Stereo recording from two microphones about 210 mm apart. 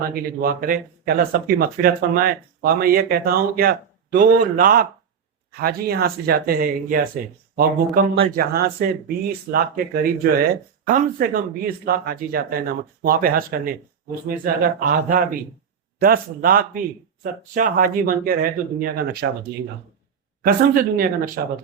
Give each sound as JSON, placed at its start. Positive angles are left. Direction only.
{"t": 0.1, "sound": "speech", "side_deg": -45}